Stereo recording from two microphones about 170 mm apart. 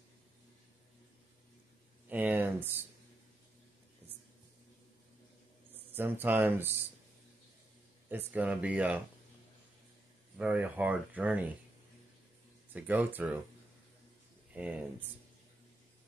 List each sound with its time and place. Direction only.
2.0 s a sound: 10° right (ahead or behind)
5.9 s speech: 10° right (ahead or behind)
8.1 s speech: 10° right (ahead or behind)
10.3 s speech: 5° right (ahead or behind)
12.7 s speech: 10° right (ahead or behind)
14.5 s speech: 10° right (ahead or behind)